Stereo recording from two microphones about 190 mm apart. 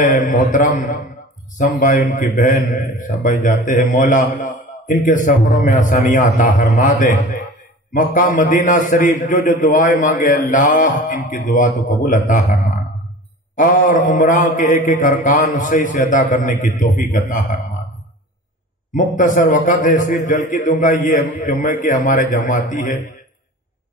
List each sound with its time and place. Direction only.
0.0 s a man's voice: 45° left (ahead or behind)
1.6 s mantra: 40° left (ahead or behind)
18.9 s mantra: 45° left (ahead or behind)